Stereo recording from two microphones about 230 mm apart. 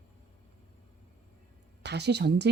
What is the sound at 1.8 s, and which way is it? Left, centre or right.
Speech, right.